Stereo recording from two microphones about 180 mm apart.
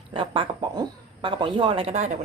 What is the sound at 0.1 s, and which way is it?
A woman's voice, 30° right (ahead or behind).